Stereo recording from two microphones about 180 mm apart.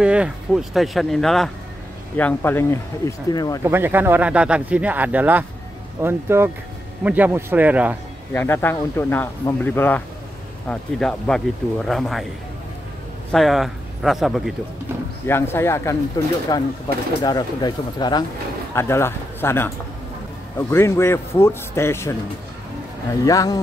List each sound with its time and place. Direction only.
0.0 s speech: 5° right (ahead or behind); by 3.6 s 20° left (ahead or behind)
3.6 s speech: 10° right (ahead or behind)
8.3 s speech: 10° left (ahead or behind)
13.3 s speech: centre (ahead or behind)
15.2 s speech: 15° left (ahead or behind)
23.2 s speech: 20° left (ahead or behind)